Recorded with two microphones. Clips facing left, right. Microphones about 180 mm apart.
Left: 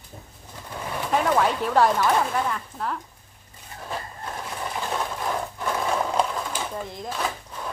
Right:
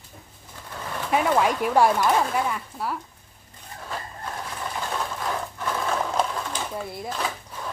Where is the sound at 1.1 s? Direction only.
10° right (ahead or behind).